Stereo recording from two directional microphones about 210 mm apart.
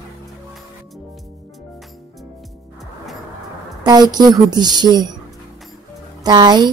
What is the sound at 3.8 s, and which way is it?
A woman's voice, 20° right (ahead or behind).